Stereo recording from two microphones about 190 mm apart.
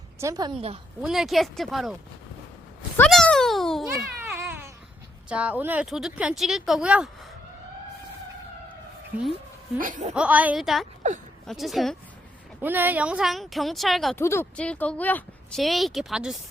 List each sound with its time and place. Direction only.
0.2 s a woman's voice: 20° right (ahead or behind)
1.0 s speech: centre (ahead or behind)
3.0 s a child's voice: 5° left (ahead or behind)
4.2 s baby cry: 10° right (ahead or behind)
5.3 s speech: 5° right (ahead or behind)
9.1 s a woman's voice: 5° right (ahead or behind)
9.7 s laughter: 45° right (ahead or behind)
10.2 s speech: 5° right (ahead or behind)
14.2 s speech: 15° left (ahead or behind); by 16.4 s centre (ahead or behind)